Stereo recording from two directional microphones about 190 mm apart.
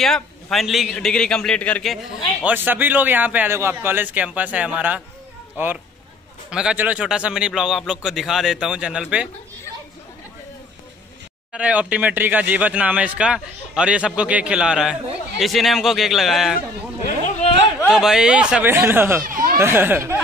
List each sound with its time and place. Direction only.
0.0 s speech: centre (ahead or behind)
2.4 s a man's voice: 10° right (ahead or behind)
6.5 s speech: 5° right (ahead or behind)
11.5 s speech: 5° right (ahead or behind)
17.8 s a man's voice: centre (ahead or behind)
19.2 s a sound: 45° right (ahead or behind)
19.5 s a man's voice: 10° right (ahead or behind)